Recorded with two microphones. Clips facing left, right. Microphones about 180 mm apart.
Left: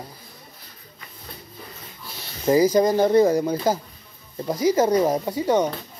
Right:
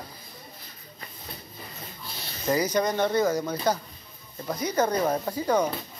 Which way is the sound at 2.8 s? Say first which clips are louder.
Left 7 dB; 30° left (ahead or behind).